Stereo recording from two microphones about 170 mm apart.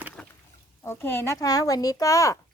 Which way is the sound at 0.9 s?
15° left (ahead or behind).